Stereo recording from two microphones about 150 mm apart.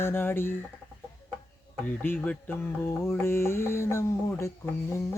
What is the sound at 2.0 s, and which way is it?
Mantra, 10° left (ahead or behind).